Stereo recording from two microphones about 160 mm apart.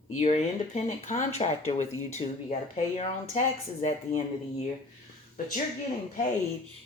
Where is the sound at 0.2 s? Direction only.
45° left (ahead or behind).